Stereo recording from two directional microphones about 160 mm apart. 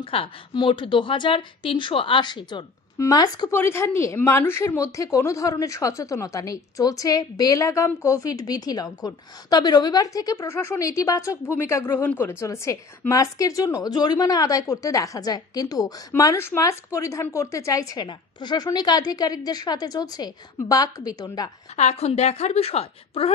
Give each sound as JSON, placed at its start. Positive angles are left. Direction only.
{"t": 0.0, "sound": "a woman's voice", "side_deg": 35}
{"t": 21.7, "sound": "a woman's voice", "side_deg": 40}